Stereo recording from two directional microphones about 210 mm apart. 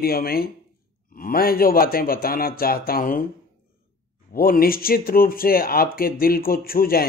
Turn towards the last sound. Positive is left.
turn(degrees=45)  # may be behind; listen again after turning